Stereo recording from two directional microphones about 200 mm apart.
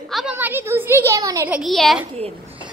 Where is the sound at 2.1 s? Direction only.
30° right (ahead or behind).